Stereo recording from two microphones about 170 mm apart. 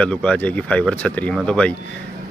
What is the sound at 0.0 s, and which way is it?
Speech, 5° left (ahead or behind).